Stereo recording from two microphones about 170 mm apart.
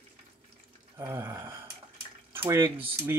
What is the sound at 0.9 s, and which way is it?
Speech, 15° right (ahead or behind).